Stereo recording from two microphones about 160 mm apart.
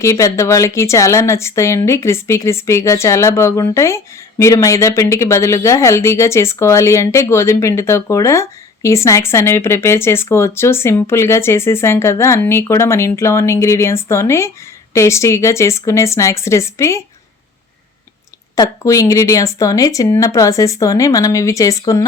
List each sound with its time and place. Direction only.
0.0 s speech: 20° left (ahead or behind)
18.5 s speech: 20° left (ahead or behind)